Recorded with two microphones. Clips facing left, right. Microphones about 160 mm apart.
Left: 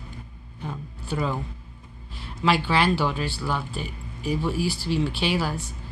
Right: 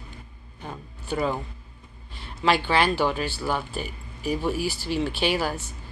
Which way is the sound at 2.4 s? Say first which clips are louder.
Even; centre (ahead or behind).